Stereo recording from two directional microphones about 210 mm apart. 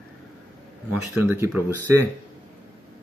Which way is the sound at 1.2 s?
10° right (ahead or behind).